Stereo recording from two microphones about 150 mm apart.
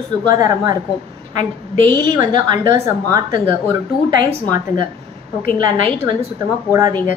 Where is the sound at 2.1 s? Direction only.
25° right (ahead or behind).